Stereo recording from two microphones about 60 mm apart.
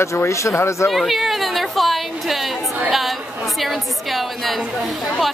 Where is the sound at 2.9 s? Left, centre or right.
Centre.